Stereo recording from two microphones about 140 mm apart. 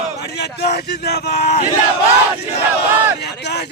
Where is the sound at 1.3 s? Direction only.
55° left (ahead or behind).